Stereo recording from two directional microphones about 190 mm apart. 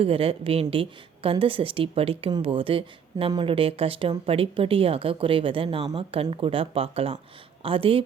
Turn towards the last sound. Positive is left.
turn(degrees=-30)  # may be behind; listen again after turning